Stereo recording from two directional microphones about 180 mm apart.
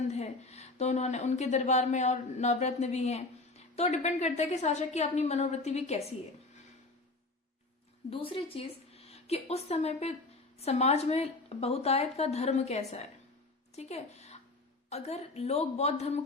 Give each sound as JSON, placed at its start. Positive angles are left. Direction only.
{"t": 0.1, "sound": "speech", "side_deg": 35}
{"t": 8.1, "sound": "a woman's voice", "side_deg": 30}